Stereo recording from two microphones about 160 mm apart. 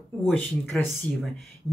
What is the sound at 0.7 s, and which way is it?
Speech, 5° left (ahead or behind).